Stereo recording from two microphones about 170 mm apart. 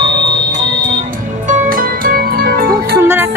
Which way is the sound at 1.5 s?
50° right (ahead or behind).